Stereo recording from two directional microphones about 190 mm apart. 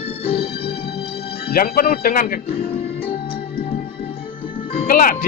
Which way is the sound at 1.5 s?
50° left (ahead or behind).